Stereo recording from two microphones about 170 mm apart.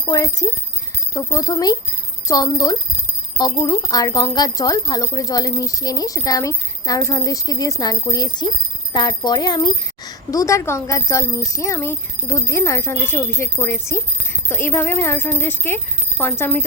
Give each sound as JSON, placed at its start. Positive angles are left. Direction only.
{"t": 0.1, "sound": "speech", "side_deg": 20}